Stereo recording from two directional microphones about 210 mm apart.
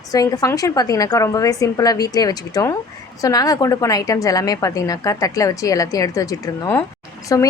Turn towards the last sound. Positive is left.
turn(degrees=15)  # may be behind; listen again after turning